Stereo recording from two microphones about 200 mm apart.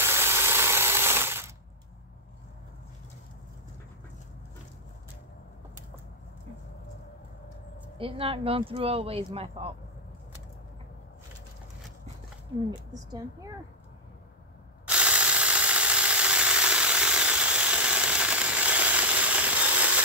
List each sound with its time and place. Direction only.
0.0 s ratchet: 10° right (ahead or behind)
8.0 s speech: 30° right (ahead or behind)
14.9 s a sound: 5° right (ahead or behind)